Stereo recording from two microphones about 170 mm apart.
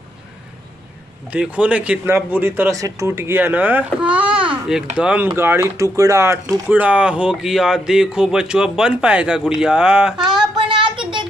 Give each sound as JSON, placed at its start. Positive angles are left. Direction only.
{"t": 1.3, "sound": "speech", "side_deg": -5}
{"t": 10.1, "sound": "child singing", "side_deg": -25}